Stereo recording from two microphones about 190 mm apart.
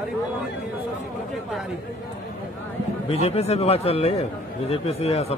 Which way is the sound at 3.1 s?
35° left (ahead or behind).